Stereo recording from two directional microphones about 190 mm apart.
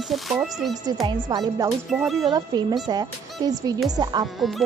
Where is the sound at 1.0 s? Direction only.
20° right (ahead or behind).